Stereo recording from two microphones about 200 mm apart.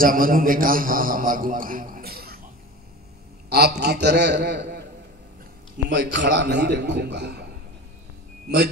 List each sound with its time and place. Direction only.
0.0 s a man's voice: 45° right (ahead or behind)
3.4 s a man's voice: 50° right (ahead or behind)
5.9 s a man's voice: 60° right (ahead or behind)